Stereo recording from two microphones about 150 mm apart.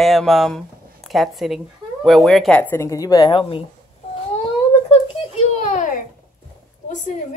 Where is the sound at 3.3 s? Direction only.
35° left (ahead or behind).